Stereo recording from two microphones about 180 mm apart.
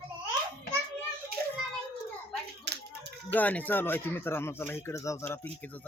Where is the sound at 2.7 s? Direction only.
70° right (ahead or behind).